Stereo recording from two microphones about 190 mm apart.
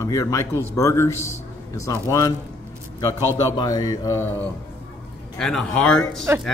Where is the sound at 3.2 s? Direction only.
15° right (ahead or behind).